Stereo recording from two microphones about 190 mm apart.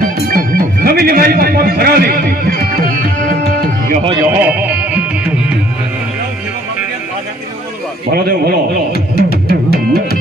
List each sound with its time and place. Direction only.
0.0 s music: 50° right (ahead or behind)
2.7 s tabla: 50° right (ahead or behind)
4.4 s music: 10° right (ahead or behind)
8.1 s a man's voice: 55° right (ahead or behind)
8.9 s music: 55° left (ahead or behind)